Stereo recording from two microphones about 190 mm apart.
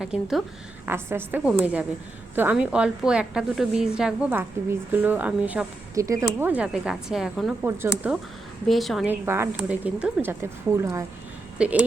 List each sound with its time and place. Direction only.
0.0 s a woman's voice: 5° right (ahead or behind)
9.2 s a woman's voice: 10° right (ahead or behind)